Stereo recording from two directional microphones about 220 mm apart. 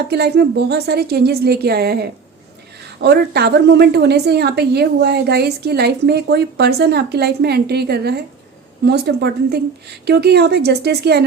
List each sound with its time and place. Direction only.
0.1 s a woman's voice: 50° right (ahead or behind)